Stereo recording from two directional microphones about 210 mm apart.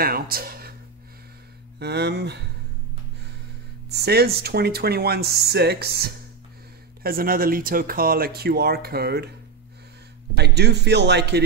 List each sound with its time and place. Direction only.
0.0 s speech: 45° right (ahead or behind)
1.8 s speech: 50° right (ahead or behind)
3.9 s speech: 50° right (ahead or behind)
10.3 s speech: 50° right (ahead or behind)